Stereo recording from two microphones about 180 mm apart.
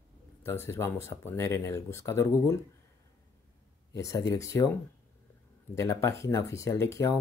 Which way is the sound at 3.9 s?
20° left (ahead or behind).